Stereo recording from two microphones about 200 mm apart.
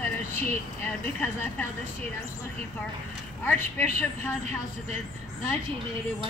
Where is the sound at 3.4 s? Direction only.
10° left (ahead or behind).